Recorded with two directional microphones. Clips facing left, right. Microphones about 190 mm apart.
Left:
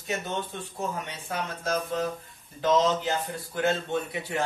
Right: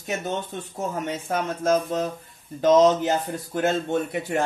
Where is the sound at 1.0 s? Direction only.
45° right (ahead or behind).